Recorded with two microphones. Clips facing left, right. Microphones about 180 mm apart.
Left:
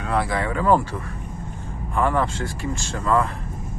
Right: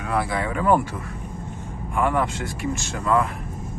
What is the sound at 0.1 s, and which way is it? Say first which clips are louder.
Speech: left 1 dB; 15° right (ahead or behind).